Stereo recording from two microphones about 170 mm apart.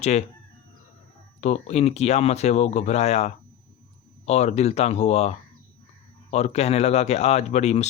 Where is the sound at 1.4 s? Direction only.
40° left (ahead or behind).